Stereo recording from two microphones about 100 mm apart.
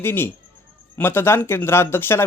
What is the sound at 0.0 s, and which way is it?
Speech, 25° left (ahead or behind).